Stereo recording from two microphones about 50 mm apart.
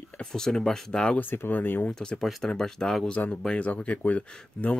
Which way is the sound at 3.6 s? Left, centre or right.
Left.